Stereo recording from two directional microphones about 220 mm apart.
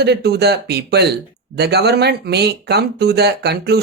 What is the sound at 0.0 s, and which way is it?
Speech, 50° right (ahead or behind).